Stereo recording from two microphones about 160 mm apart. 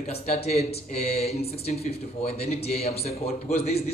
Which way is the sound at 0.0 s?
45° left (ahead or behind).